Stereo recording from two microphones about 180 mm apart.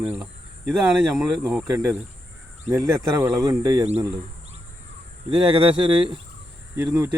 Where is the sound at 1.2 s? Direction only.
10° right (ahead or behind).